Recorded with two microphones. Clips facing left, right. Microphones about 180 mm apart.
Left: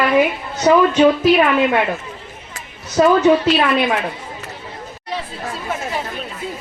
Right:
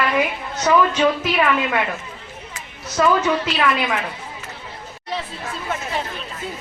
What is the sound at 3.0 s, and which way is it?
Speech, 35° left (ahead or behind).